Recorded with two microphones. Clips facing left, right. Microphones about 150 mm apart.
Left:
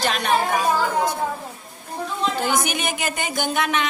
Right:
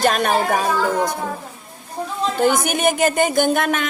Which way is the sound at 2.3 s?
50° right (ahead or behind).